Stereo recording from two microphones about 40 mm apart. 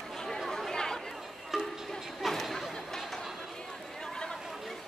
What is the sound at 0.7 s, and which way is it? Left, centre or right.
Chatter, centre.